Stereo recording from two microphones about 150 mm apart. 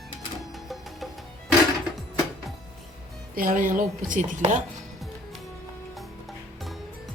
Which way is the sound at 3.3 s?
70° right (ahead or behind).